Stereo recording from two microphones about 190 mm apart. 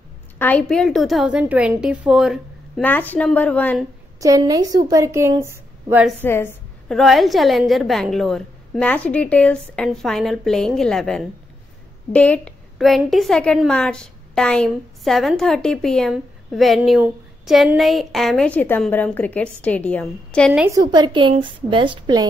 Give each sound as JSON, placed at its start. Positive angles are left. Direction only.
{"t": 0.4, "sound": "a woman's voice", "side_deg": 10}
{"t": 2.8, "sound": "a woman's voice", "side_deg": 10}
{"t": 4.2, "sound": "a woman's voice", "side_deg": -20}
{"t": 6.2, "sound": "a sound", "side_deg": 10}
{"t": 7.0, "sound": "a woman's voice", "side_deg": 0}
{"t": 20.5, "sound": "a woman's voice", "side_deg": -15}
{"t": 20.8, "sound": "a woman's voice", "side_deg": -25}